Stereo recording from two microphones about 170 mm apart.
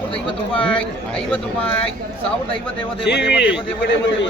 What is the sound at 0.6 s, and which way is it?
Speech, 5° left (ahead or behind).